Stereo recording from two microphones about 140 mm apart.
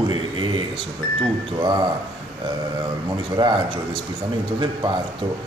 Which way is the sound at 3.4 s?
35° right (ahead or behind).